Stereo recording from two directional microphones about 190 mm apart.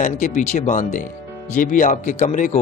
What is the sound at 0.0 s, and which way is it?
A man's voice, 40° left (ahead or behind).